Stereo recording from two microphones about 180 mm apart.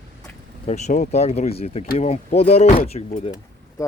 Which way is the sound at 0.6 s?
40° left (ahead or behind).